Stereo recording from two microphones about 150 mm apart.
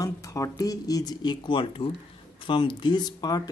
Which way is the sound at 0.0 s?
20° left (ahead or behind).